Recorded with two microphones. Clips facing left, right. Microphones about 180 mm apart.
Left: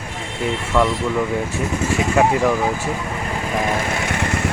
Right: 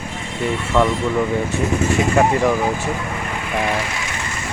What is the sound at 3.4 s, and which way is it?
Vehicle, 40° left (ahead or behind).